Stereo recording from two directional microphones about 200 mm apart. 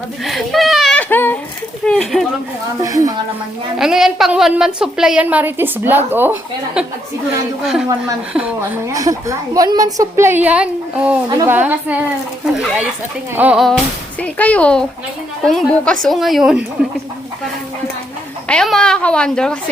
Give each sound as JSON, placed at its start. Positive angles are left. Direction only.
{"t": 0.3, "sound": "a sound", "side_deg": 0}
{"t": 1.8, "sound": "a woman's voice", "side_deg": 5}
{"t": 2.8, "sound": "a woman's voice", "side_deg": -15}
{"t": 3.8, "sound": "a woman's voice", "side_deg": 0}
{"t": 8.9, "sound": "a woman's voice", "side_deg": -15}
{"t": 18.4, "sound": "a woman's voice", "side_deg": 5}